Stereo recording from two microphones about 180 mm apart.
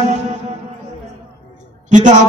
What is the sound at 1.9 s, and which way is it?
Speech, 45° right (ahead or behind).